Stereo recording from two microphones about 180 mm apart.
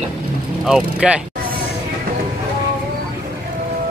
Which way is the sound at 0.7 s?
5° right (ahead or behind).